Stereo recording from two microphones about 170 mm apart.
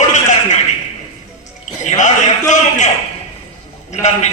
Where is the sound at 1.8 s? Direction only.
45° left (ahead or behind).